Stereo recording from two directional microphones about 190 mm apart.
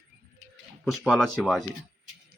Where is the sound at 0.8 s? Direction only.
Centre (ahead or behind).